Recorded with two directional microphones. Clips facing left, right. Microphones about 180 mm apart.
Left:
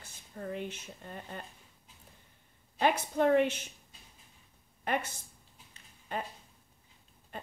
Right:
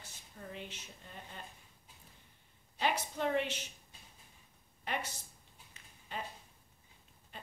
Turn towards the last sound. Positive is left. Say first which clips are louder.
# left 7 dB
turn(degrees=50)  # may be behind; listen again after turning